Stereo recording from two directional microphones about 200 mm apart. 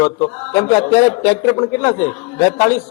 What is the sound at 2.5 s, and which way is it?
Speech, 10° left (ahead or behind).